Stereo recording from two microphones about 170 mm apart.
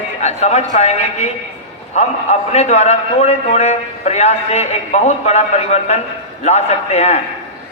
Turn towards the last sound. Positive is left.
turn(degrees=40)  # may be behind; listen again after turning